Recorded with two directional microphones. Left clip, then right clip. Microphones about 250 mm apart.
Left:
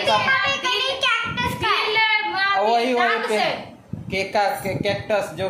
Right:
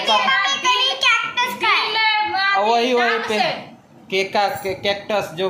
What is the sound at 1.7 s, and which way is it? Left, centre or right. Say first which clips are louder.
Child singing: even; centre.